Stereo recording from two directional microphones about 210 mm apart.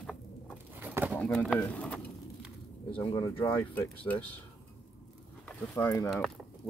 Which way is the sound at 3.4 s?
10° left (ahead or behind).